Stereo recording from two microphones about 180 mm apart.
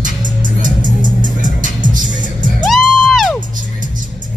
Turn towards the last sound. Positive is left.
turn(degrees=0)  # may be behind; listen again after turning